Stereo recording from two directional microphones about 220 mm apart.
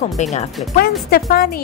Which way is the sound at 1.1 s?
40° left (ahead or behind).